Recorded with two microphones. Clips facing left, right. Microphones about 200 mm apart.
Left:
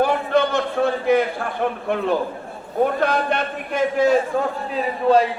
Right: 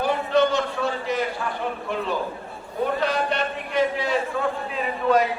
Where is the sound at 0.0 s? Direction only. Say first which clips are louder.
Left 2 dB; 55° left (ahead or behind).